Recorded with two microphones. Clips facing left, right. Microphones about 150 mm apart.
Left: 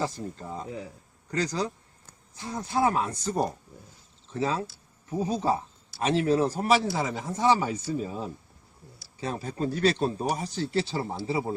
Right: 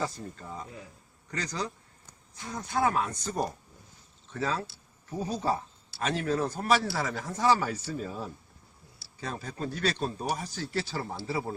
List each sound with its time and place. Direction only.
0.0 s a man's voice: 30° left (ahead or behind)